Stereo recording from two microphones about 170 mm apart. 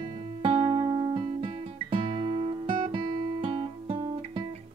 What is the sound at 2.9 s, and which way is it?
Guitar, 30° right (ahead or behind).